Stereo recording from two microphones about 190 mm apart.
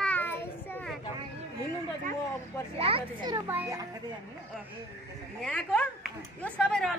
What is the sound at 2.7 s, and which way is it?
Speech, 30° right (ahead or behind).